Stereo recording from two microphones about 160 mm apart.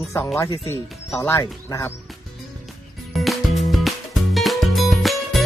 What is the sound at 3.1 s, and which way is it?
Music, centre (ahead or behind).